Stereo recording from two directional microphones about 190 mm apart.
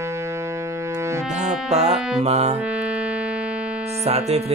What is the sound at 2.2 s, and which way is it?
Speech, 35° right (ahead or behind).